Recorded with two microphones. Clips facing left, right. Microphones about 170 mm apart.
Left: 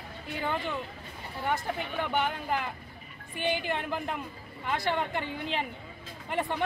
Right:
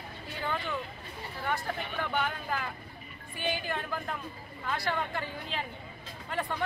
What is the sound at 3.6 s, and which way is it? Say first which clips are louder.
Speech: left 3 dB; 20° left (ahead or behind).